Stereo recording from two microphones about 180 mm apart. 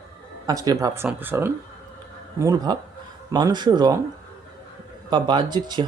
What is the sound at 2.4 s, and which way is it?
Speech, 20° right (ahead or behind).